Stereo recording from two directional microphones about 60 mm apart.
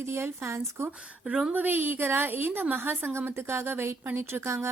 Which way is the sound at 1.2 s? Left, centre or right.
Centre.